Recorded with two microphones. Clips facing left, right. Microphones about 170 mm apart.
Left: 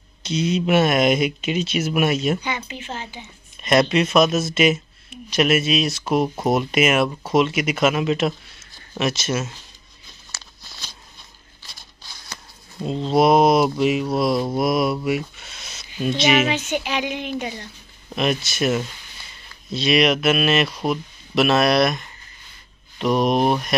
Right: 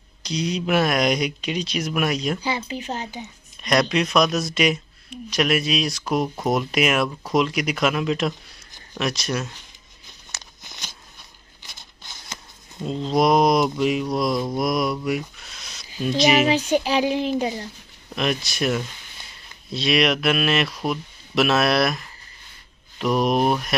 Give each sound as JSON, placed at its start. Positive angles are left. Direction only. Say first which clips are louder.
{"t": 0.2, "sound": "speech", "louder": "left 4 dB", "side_deg": 0}
{"t": 2.4, "sound": "a woman's voice", "louder": "right 2 dB", "side_deg": -35}
{"t": 3.9, "sound": "speech", "louder": "left 3 dB", "side_deg": 0}
{"t": 10.3, "sound": "walk", "louder": "right 1 dB", "side_deg": -20}
{"t": 11.6, "sound": "a sound", "louder": "right 1 dB", "side_deg": -20}
{"t": 12.7, "sound": "speech", "louder": "left 3 dB", "side_deg": 0}
{"t": 14.3, "sound": "mantra", "louder": "left 3 dB", "side_deg": 25}
{"t": 14.6, "sound": "speech", "louder": "left 3 dB", "side_deg": 5}
{"t": 15.0, "sound": "a sound", "louder": "left 2 dB", "side_deg": 0}
{"t": 16.0, "sound": "speech", "louder": "even", "side_deg": 0}
{"t": 16.4, "sound": "a woman's voice", "louder": "right 4 dB", "side_deg": -35}
{"t": 18.1, "sound": "speech", "louder": "left 2 dB", "side_deg": 0}